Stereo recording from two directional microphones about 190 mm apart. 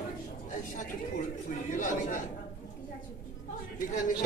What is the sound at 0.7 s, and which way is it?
Speech, 45° left (ahead or behind).